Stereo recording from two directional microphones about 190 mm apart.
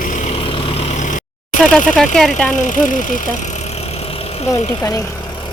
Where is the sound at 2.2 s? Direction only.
5° left (ahead or behind).